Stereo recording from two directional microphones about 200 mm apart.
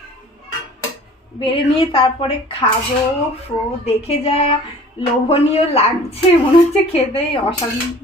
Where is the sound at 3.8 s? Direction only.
30° left (ahead or behind).